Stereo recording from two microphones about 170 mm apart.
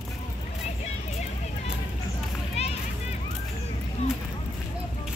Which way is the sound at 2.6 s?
40° left (ahead or behind).